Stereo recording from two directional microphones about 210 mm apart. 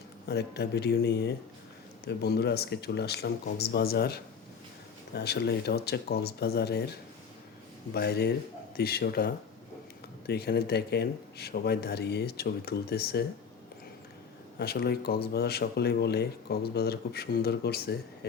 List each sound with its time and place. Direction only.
0.3 s speech: 50° left (ahead or behind)
7.9 s speech: 50° left (ahead or behind)
14.6 s speech: 50° left (ahead or behind)